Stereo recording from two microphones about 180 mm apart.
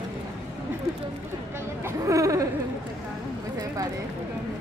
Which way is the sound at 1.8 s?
15° right (ahead or behind).